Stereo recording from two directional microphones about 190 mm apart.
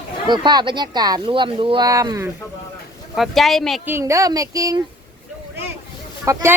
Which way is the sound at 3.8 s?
15° right (ahead or behind).